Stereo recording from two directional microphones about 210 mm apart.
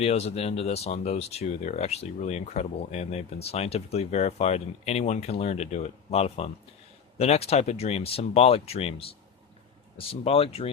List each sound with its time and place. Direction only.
0.0 s speech: 30° left (ahead or behind)
10.1 s speech: 25° left (ahead or behind)